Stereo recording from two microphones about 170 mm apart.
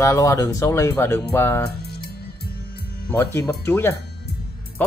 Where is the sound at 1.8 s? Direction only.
70° left (ahead or behind).